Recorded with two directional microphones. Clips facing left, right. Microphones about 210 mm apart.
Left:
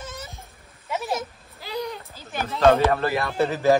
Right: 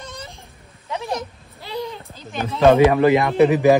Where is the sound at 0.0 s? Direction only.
5° left (ahead or behind).